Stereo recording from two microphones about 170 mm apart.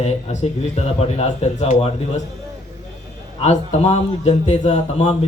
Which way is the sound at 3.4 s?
40° left (ahead or behind).